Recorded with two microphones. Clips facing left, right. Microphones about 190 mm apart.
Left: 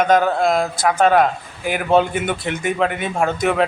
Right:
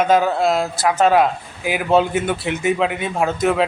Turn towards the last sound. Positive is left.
turn(degrees=0)  # may be behind; listen again after turning